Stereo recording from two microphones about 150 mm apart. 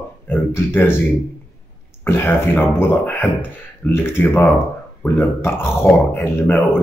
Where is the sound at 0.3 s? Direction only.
15° left (ahead or behind).